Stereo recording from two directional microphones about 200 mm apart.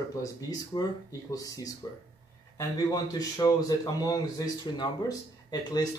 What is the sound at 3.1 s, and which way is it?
Speech, 20° left (ahead or behind).